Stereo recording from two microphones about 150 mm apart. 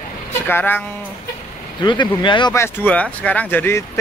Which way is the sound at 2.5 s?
15° left (ahead or behind).